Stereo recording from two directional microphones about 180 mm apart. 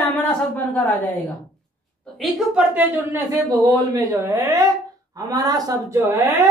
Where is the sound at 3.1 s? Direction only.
20° right (ahead or behind).